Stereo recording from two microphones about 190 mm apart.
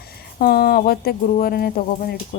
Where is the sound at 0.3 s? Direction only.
50° left (ahead or behind).